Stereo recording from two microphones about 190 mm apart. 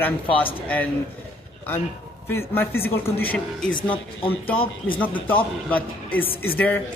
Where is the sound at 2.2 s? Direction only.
10° left (ahead or behind).